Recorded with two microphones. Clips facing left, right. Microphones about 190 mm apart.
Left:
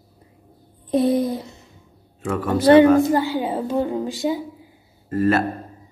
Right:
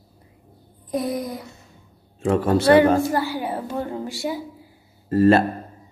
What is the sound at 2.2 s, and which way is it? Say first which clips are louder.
Speech: right 2 dB; 30° right (ahead or behind).